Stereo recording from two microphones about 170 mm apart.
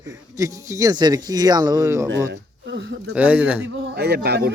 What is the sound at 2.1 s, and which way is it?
Speech, 90° right.